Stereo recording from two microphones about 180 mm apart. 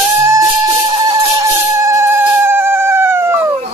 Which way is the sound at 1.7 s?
15° right (ahead or behind).